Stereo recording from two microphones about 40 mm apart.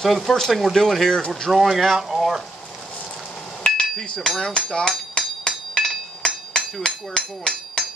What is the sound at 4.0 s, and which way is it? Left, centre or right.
Speech, left.